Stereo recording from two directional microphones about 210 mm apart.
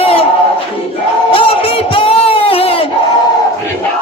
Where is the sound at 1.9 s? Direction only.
25° left (ahead or behind).